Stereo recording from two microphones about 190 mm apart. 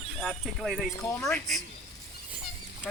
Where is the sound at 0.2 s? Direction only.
Centre (ahead or behind).